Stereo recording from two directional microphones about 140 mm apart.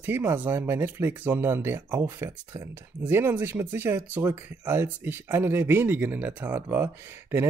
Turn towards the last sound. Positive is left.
turn(degrees=-15)  # may be behind; listen again after turning